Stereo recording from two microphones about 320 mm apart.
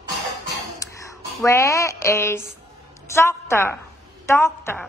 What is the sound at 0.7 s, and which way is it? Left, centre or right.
A woman's voice, centre.